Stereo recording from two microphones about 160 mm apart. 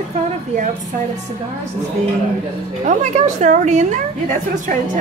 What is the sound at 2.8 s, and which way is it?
A woman's voice, 45° right (ahead or behind).